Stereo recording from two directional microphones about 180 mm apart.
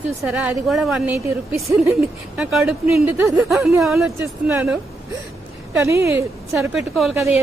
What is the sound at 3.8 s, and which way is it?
Speech, centre (ahead or behind).